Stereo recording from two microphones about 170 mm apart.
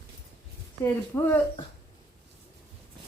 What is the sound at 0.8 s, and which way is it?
Speech, 10° left (ahead or behind).